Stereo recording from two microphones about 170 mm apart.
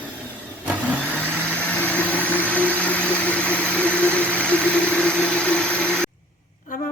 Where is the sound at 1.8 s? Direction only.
10° left (ahead or behind).